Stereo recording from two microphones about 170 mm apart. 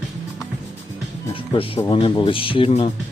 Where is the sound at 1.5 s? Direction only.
30° left (ahead or behind).